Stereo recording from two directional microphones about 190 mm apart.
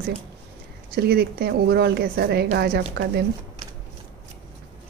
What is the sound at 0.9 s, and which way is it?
A woman's voice, 55° right (ahead or behind).